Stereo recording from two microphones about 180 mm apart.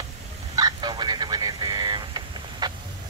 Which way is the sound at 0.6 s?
25° right (ahead or behind).